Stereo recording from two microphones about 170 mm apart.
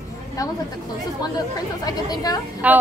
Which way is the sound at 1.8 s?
20° left (ahead or behind).